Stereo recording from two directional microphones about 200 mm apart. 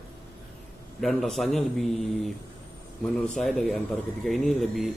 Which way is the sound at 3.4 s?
Centre (ahead or behind).